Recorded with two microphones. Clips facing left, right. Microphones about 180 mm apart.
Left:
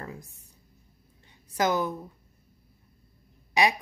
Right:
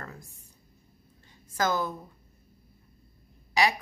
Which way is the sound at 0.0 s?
15° left (ahead or behind).